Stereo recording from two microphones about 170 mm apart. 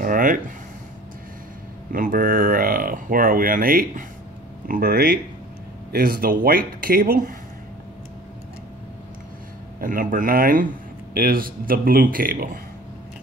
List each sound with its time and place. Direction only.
0.0 s a sound: 55° right (ahead or behind)
1.9 s speech: 55° right (ahead or behind)
9.8 s speech: 55° right (ahead or behind)